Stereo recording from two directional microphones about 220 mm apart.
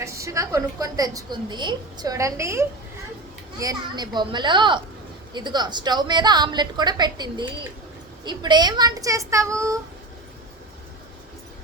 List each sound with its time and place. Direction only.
0.0 s a woman's voice: 15° right (ahead or behind)